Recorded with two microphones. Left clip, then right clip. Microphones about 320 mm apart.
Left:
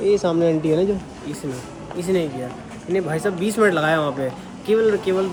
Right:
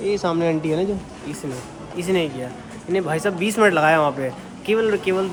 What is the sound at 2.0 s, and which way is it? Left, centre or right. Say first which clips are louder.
Speech: even; centre.